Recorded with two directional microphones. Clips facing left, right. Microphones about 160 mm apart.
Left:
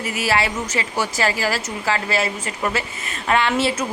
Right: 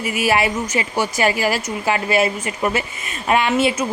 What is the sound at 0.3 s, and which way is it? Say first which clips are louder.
A woman's voice: right 3 dB; 20° right (ahead or behind).